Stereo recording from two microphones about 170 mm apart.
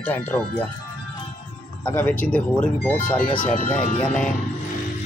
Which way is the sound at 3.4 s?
45° left (ahead or behind).